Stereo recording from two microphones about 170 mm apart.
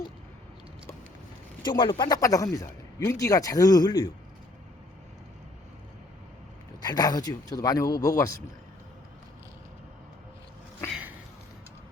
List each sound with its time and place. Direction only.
1.6 s speech: 25° left (ahead or behind)
6.8 s speech: 25° left (ahead or behind)